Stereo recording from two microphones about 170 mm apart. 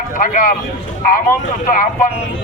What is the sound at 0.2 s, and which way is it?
A man's voice, 50° left (ahead or behind).